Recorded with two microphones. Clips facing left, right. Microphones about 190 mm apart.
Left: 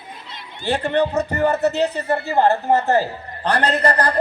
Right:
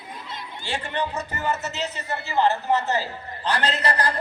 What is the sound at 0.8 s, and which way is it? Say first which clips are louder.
Speech: left 10 dB; 55° left (ahead or behind).